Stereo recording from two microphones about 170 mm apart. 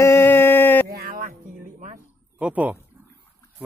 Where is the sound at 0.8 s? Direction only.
60° right (ahead or behind).